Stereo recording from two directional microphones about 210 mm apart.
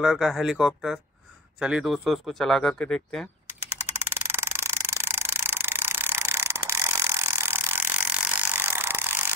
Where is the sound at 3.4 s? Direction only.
10° right (ahead or behind).